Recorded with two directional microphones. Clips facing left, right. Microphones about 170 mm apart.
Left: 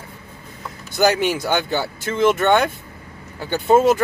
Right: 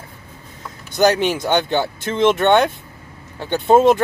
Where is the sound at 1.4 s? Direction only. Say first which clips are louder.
Right 3 dB; 20° right (ahead or behind).